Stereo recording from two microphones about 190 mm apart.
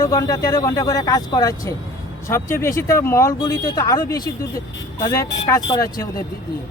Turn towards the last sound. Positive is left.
turn(degrees=20)  # may be behind; listen again after turning